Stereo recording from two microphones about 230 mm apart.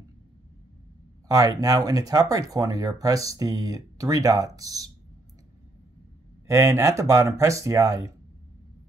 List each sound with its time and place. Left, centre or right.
1.3 s speech: centre
6.4 s speech: centre